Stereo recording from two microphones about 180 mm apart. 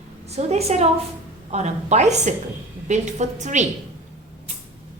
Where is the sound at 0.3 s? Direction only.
35° right (ahead or behind).